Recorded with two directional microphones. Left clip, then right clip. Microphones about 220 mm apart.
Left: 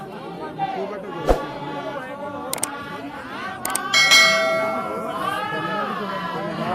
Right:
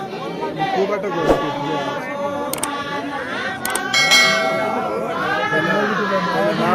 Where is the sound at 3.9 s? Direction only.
Centre (ahead or behind).